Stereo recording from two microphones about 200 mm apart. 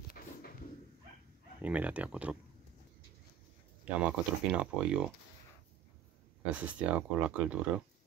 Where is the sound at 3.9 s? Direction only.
10° right (ahead or behind).